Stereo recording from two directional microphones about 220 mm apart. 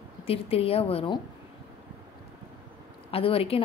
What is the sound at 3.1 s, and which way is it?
Speech, 25° left (ahead or behind).